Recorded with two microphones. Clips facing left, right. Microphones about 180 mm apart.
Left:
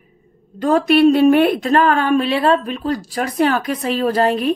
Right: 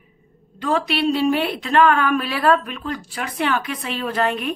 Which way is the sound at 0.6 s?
45° left (ahead or behind).